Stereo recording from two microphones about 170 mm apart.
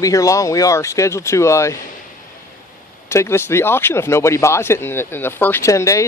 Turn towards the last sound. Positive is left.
turn(degrees=20)  # may be behind; listen again after turning